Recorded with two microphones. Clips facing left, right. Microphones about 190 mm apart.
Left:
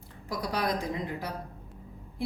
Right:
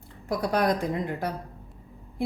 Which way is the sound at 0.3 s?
50° right (ahead or behind).